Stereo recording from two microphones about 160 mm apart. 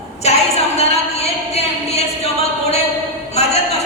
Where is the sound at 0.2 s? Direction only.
40° left (ahead or behind).